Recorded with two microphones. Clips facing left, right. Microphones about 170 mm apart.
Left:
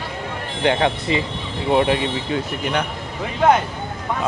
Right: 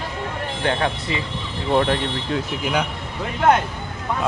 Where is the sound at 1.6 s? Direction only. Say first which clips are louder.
Left 2 dB; 10° left (ahead or behind).